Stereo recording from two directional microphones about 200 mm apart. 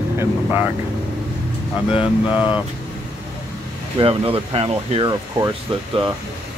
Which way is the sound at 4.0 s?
25° right (ahead or behind).